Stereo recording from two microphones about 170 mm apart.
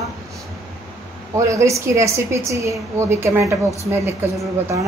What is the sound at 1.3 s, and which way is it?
A woman's voice, 20° right (ahead or behind).